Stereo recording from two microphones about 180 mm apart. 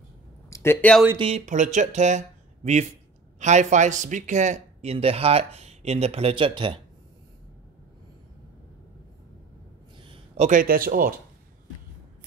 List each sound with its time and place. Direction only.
0.5 s speech: 15° left (ahead or behind)
1.1 s speech: 30° right (ahead or behind)
1.4 s a man's voice: 45° right (ahead or behind)
10.0 s speech: 35° right (ahead or behind)